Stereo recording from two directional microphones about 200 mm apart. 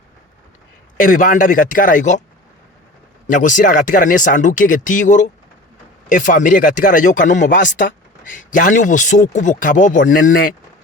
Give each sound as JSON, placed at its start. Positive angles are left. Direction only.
{"t": 0.9, "sound": "speech", "side_deg": 40}
{"t": 3.2, "sound": "speech", "side_deg": 40}